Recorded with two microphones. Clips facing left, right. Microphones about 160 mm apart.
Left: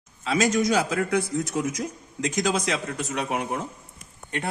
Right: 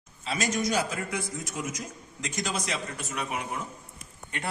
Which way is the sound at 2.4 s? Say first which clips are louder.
Left 5 dB; 90° left.